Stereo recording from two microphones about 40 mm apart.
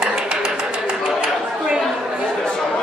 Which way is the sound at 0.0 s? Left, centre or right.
Centre.